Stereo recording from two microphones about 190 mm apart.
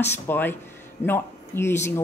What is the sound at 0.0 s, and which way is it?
Speech, 10° left (ahead or behind).